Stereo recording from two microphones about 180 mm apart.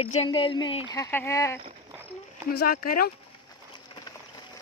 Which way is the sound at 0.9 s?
15° left (ahead or behind).